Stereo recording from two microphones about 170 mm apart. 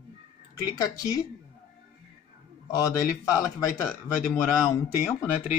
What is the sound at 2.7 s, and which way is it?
Speech, 20° left (ahead or behind).